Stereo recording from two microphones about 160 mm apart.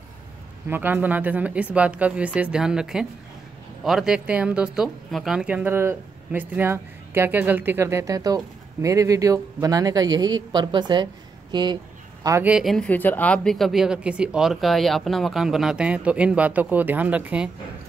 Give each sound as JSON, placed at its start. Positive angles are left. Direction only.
{"t": 0.7, "sound": "speech", "side_deg": -10}
{"t": 11.5, "sound": "a sound", "side_deg": -30}
{"t": 12.4, "sound": "speech", "side_deg": -5}